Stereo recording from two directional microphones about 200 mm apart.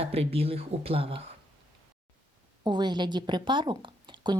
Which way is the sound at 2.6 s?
20° right (ahead or behind).